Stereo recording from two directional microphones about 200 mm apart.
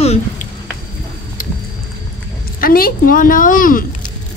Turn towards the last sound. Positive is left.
turn(degrees=40)  # may be behind; listen again after turning